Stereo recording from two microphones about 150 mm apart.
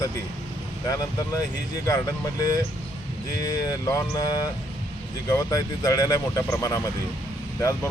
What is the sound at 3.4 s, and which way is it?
Speech, 25° left (ahead or behind).